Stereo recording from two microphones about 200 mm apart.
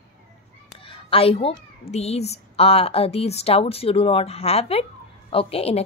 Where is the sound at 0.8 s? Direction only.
25° left (ahead or behind).